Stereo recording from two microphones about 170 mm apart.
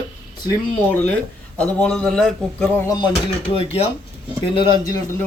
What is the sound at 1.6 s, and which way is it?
Speech, 5° left (ahead or behind).